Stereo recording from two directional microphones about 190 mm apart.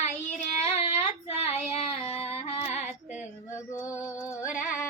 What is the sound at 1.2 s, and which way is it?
Female singing, 30° left (ahead or behind).